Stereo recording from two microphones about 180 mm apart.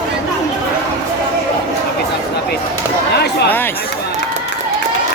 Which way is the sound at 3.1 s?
65° left (ahead or behind).